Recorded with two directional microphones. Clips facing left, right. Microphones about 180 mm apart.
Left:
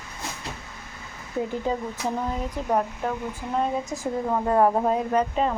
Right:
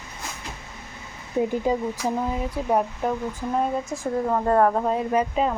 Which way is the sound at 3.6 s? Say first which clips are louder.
Even; centre (ahead or behind).